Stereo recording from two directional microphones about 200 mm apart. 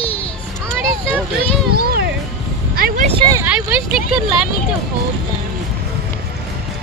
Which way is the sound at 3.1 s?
20° right (ahead or behind).